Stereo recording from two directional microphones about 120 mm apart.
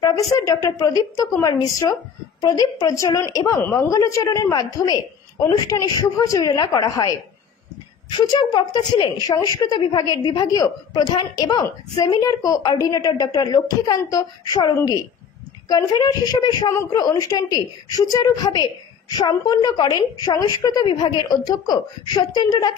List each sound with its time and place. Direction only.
0.4 s a woman's voice: 30° left (ahead or behind)